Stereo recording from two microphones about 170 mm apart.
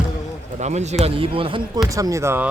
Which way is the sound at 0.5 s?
40° right (ahead or behind).